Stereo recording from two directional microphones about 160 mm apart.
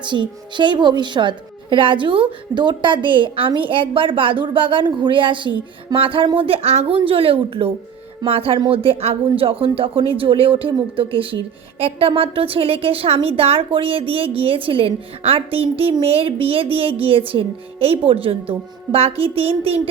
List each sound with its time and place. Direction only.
0.0 s a woman's voice: 30° right (ahead or behind)